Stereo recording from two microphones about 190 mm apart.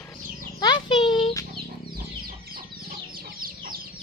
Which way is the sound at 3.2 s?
50° right (ahead or behind).